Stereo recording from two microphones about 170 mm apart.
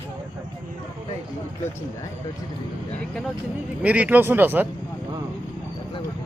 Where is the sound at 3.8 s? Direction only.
10° right (ahead or behind).